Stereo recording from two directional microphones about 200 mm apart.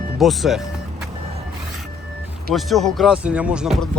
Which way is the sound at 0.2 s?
Centre (ahead or behind).